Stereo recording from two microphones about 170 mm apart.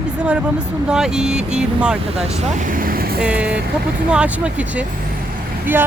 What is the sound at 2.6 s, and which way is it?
Vehicle, 55° right (ahead or behind).